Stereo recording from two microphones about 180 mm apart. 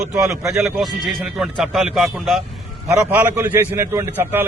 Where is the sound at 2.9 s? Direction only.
10° right (ahead or behind).